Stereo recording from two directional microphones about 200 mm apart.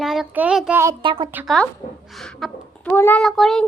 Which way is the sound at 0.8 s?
20° right (ahead or behind).